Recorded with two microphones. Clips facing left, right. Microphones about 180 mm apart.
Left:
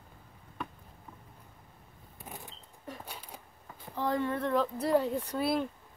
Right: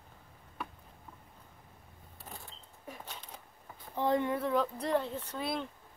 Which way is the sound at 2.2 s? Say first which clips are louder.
Left 3 dB; 15° left (ahead or behind).